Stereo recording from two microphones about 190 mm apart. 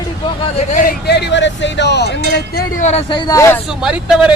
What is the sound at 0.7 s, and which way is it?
Speech, 45° left (ahead or behind).